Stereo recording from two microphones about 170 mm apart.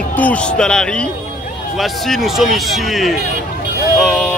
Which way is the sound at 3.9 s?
5° left (ahead or behind).